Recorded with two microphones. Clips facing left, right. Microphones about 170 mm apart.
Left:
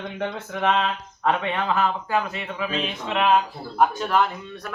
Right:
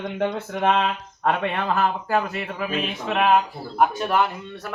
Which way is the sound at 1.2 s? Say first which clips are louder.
Even; 50° right (ahead or behind).